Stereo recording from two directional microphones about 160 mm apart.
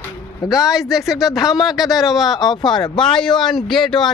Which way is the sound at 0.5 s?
5° right (ahead or behind).